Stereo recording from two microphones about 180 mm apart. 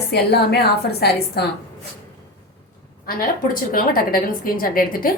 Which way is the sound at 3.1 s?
55° left (ahead or behind).